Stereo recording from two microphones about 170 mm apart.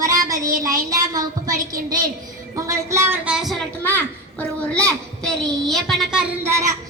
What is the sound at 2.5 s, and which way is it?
A child's voice, 15° right (ahead or behind).